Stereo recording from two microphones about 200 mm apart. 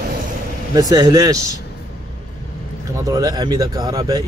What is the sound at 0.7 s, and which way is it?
Speech, 20° right (ahead or behind).